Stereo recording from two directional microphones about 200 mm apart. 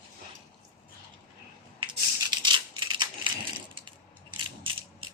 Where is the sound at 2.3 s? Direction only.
20° right (ahead or behind).